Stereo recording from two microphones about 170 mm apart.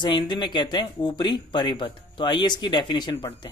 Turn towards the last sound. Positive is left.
turn(degrees=25)  # may be behind; listen again after turning